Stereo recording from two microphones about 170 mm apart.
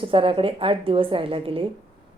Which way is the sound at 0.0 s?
30° right (ahead or behind).